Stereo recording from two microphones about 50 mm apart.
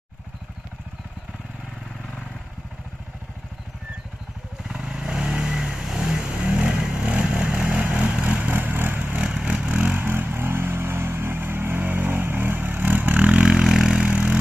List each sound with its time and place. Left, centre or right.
4.8 s vehicle: centre
8.5 s vehicle: right
9.2 s vehicle: centre
10.0 s vehicle: right
13.7 s vehicle: centre
13.9 s vehicle: right